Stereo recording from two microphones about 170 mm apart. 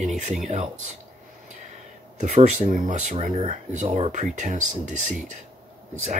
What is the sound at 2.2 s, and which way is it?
Speech, 45° right (ahead or behind).